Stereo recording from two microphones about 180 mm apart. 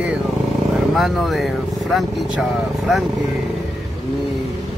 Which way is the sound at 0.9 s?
Centre (ahead or behind).